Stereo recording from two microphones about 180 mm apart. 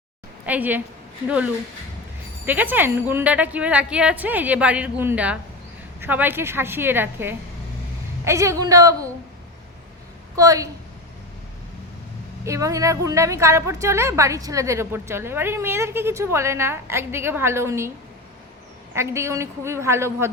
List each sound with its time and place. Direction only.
0.4 s a woman's voice: 10° right (ahead or behind)
2.5 s a woman's voice: 10° right (ahead or behind)
10.3 s a woman's voice: 20° right (ahead or behind)
12.5 s a woman's voice: 15° right (ahead or behind)
18.9 s a woman's voice: 15° right (ahead or behind)